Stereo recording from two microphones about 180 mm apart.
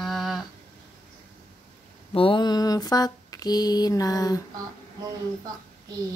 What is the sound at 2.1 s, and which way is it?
Mantra, 30° left (ahead or behind).